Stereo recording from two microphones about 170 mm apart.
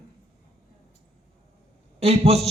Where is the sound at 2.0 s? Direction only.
35° right (ahead or behind).